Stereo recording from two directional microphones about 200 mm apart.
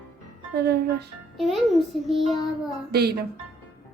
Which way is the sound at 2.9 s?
50° right (ahead or behind).